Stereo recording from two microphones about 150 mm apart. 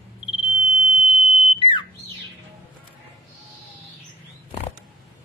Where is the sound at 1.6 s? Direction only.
35° left (ahead or behind).